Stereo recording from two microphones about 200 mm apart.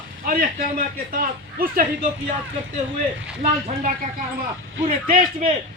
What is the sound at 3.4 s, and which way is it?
A man's voice, 40° right (ahead or behind).